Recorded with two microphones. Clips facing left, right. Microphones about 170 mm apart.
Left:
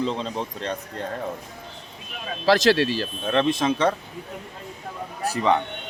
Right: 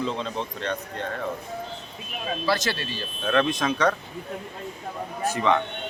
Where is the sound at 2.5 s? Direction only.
90° left.